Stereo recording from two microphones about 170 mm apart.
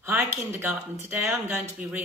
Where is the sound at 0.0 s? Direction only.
15° right (ahead or behind).